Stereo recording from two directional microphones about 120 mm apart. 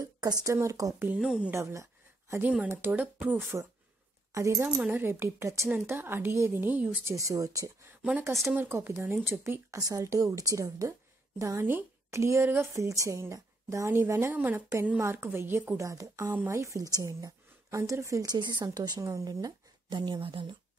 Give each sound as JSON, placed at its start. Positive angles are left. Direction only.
{"t": 0.0, "sound": "speech", "side_deg": -30}
{"t": 0.9, "sound": "speech", "side_deg": -15}
{"t": 1.2, "sound": "speech", "side_deg": -5}
{"t": 1.5, "sound": "speech", "side_deg": -25}
{"t": 4.7, "sound": "speech", "side_deg": -10}
{"t": 7.2, "sound": "speech", "side_deg": -30}
{"t": 15.8, "sound": "speech", "side_deg": -25}